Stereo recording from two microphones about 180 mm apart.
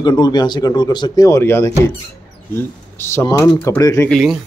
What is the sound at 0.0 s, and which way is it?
A man's voice, 25° left (ahead or behind).